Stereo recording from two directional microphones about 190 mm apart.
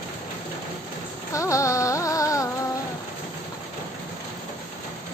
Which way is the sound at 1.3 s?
15° left (ahead or behind).